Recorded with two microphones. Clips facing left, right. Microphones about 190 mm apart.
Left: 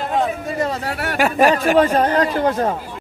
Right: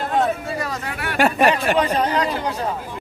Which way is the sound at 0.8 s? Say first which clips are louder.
Left 4 dB; 40° left (ahead or behind).